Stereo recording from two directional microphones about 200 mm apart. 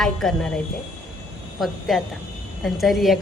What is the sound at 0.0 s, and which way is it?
Speech, centre (ahead or behind).